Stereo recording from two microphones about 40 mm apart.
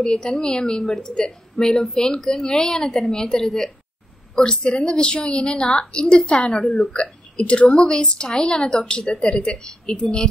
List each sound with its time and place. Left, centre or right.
0.0 s a woman's voice: centre
4.4 s a woman's voice: left